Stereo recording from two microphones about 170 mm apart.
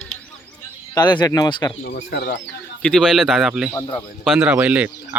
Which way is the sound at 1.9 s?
70° left (ahead or behind).